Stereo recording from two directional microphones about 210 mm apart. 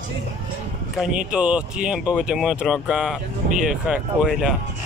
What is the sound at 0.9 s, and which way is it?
Speech, 5° right (ahead or behind).